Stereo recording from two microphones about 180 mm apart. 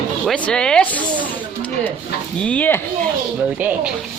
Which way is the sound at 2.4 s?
10° left (ahead or behind).